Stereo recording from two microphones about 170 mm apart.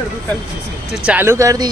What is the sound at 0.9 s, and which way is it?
Speech, 10° right (ahead or behind).